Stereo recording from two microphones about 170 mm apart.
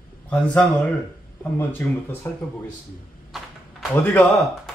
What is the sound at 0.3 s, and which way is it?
Speech, 10° left (ahead or behind).